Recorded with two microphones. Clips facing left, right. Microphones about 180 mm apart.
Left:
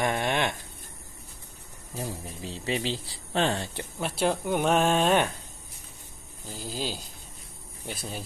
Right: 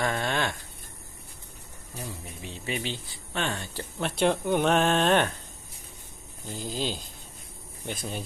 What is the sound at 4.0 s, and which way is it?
Speech, 5° left (ahead or behind).